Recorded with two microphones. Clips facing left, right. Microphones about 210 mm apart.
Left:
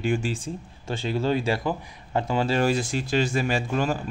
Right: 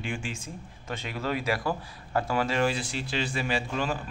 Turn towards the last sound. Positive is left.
turn(degrees=45)  # may be behind; listen again after turning